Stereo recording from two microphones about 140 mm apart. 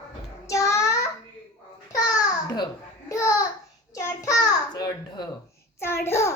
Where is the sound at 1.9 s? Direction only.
25° left (ahead or behind).